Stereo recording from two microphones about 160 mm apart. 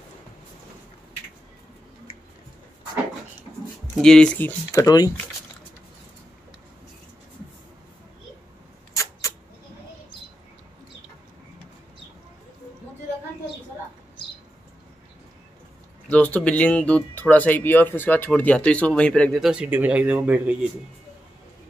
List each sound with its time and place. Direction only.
3.9 s speech: 5° left (ahead or behind)
4.8 s speech: 25° left (ahead or behind)
16.1 s speech: 10° left (ahead or behind); by 20.5 s 10° right (ahead or behind)